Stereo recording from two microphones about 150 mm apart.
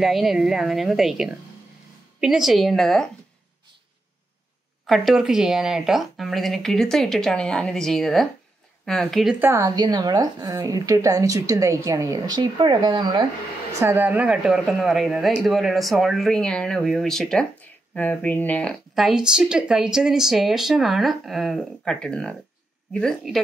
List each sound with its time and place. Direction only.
0.0 s speech: centre (ahead or behind)
4.8 s speech: centre (ahead or behind)
9.4 s a woman's voice: 15° right (ahead or behind); by 13.3 s 30° right (ahead or behind)
13.7 s speech: 15° right (ahead or behind); by 23.4 s 5° left (ahead or behind)